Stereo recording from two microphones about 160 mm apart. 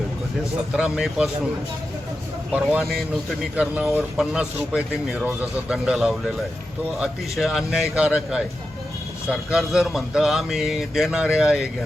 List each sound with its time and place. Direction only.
0.7 s speech: 5° right (ahead or behind)
2.5 s speech: 5° right (ahead or behind)